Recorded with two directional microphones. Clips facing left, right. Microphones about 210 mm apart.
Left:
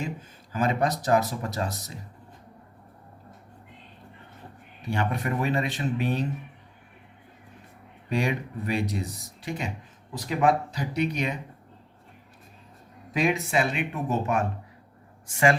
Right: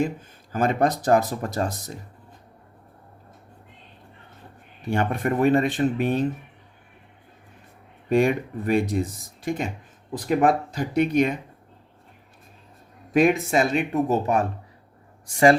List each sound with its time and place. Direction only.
0.5 s speech: 50° right (ahead or behind)
4.9 s speech: 50° right (ahead or behind)
8.1 s speech: 50° right (ahead or behind)
13.1 s speech: 50° right (ahead or behind)